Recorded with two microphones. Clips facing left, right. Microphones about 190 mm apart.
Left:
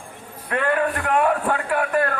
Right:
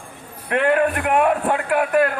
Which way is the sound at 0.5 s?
20° right (ahead or behind).